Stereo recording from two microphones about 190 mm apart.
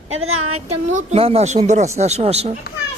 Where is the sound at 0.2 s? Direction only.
90° right.